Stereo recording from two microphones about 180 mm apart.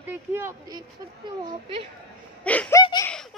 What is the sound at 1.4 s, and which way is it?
Speech, 30° right (ahead or behind).